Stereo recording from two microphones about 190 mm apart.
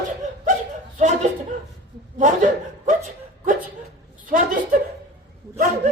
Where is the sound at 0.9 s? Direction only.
40° right (ahead or behind).